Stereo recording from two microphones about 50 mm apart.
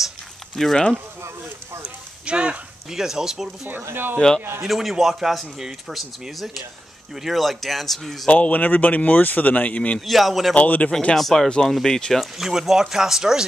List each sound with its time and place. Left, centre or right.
0.6 s speech: centre
2.2 s speech: right
2.9 s speech: centre
3.9 s speech: right
4.6 s speech: centre
8.3 s speech: left
9.9 s speech: centre
10.5 s speech: left
11.1 s speech: centre
12.2 s speech: centre